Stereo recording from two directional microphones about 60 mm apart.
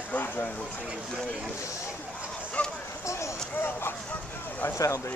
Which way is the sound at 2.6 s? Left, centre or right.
Left.